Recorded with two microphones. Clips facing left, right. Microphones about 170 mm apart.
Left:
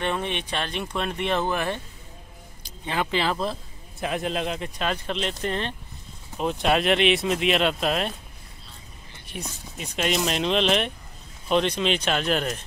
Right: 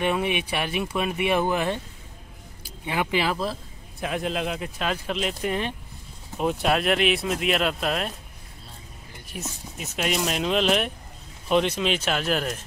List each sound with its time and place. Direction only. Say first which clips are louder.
0.0 s speech: right 3 dB; 10° right (ahead or behind)
9.3 s speech: even; 5° right (ahead or behind)